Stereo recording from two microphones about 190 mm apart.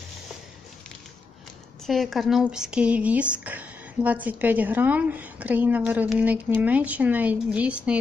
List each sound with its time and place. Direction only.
1.9 s speech: centre (ahead or behind)